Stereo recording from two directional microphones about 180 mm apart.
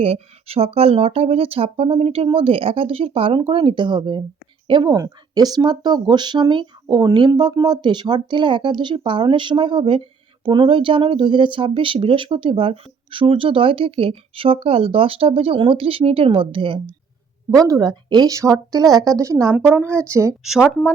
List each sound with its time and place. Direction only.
0.0 s speech: 35° right (ahead or behind); by 19.5 s 15° right (ahead or behind)
19.5 s speech: 5° left (ahead or behind)
19.7 s speech: 15° right (ahead or behind)
20.4 s speech: centre (ahead or behind)